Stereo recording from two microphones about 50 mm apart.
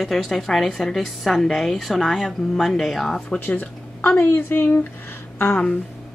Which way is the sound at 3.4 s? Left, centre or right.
Left.